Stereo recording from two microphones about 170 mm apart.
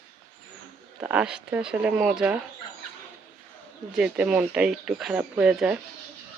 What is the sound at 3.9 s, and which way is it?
Speech, 5° right (ahead or behind).